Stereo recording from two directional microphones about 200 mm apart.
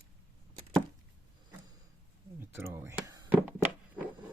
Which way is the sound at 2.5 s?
10° right (ahead or behind).